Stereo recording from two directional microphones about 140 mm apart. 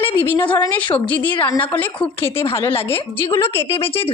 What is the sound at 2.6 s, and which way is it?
Speech, 40° left (ahead or behind).